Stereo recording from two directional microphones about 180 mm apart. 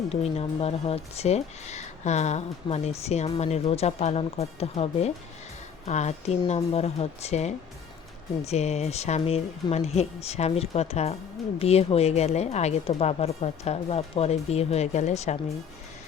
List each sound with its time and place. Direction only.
0.1 s speech: 35° left (ahead or behind)